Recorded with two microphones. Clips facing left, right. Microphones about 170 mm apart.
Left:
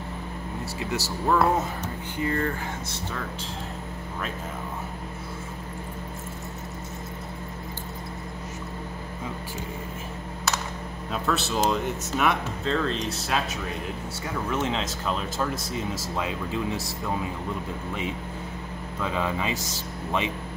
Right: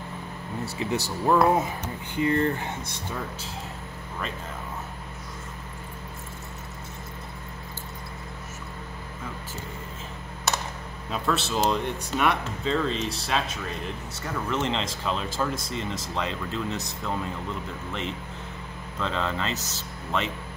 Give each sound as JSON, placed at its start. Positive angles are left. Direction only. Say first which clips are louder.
{"t": 1.0, "sound": "speech", "louder": "right 2 dB", "side_deg": -15}
{"t": 11.1, "sound": "speech", "louder": "even", "side_deg": 0}
{"t": 18.9, "sound": "speech", "louder": "left 1 dB", "side_deg": 10}